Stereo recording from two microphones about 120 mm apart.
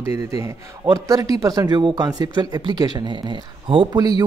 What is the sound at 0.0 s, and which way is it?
Speech, 25° right (ahead or behind).